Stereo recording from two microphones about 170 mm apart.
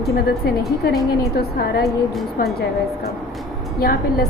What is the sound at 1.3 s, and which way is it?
Speech, 65° left (ahead or behind).